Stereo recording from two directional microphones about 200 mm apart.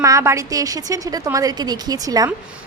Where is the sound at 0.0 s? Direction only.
15° right (ahead or behind).